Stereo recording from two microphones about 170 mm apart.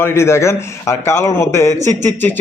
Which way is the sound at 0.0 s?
15° left (ahead or behind).